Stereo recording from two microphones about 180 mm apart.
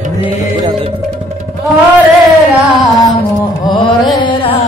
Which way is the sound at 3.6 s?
25° left (ahead or behind).